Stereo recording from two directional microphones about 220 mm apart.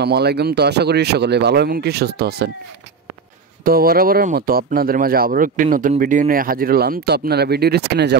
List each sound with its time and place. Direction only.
0.0 s speech: 50° right (ahead or behind)
3.6 s speech: 40° right (ahead or behind)